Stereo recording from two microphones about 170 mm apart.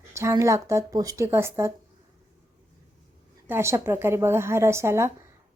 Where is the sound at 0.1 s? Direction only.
15° right (ahead or behind).